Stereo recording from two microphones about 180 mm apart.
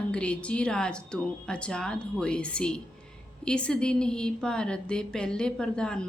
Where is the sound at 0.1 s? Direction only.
5° left (ahead or behind).